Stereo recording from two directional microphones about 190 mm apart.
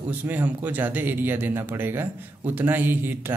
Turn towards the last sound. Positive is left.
turn(degrees=-10)  # may be behind; listen again after turning